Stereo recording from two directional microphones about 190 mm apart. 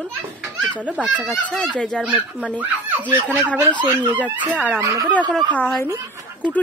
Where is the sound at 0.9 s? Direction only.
5° right (ahead or behind).